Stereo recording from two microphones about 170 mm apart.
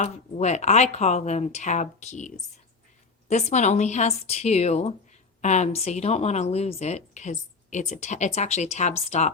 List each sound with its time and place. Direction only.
0.0 s speech: 40° left (ahead or behind)